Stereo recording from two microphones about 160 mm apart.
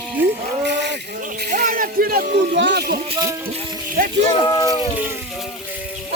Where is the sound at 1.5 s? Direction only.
60° right (ahead or behind); by 3.0 s 85° right.